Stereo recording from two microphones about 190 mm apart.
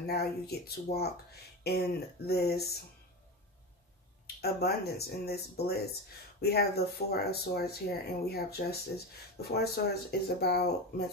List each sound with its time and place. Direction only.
0.0 s speech: 55° left (ahead or behind)
4.4 s speech: 55° left (ahead or behind)